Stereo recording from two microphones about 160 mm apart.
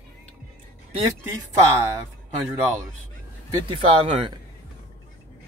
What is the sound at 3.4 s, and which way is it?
Speech, 25° right (ahead or behind).